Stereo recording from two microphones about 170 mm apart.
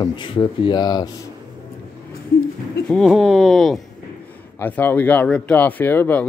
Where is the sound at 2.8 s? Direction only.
Centre (ahead or behind).